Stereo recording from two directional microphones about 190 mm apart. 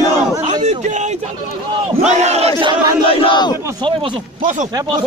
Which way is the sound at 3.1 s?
30° left (ahead or behind).